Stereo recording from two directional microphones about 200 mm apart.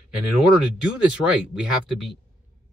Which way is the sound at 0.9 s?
5° right (ahead or behind).